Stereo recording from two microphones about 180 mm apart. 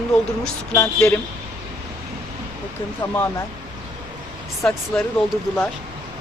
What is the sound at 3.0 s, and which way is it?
Speech, 10° left (ahead or behind).